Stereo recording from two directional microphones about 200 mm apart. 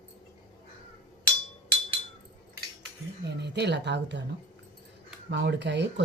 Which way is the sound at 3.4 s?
60° right (ahead or behind).